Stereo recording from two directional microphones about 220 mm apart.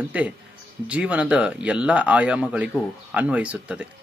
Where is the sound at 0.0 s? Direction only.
5° right (ahead or behind).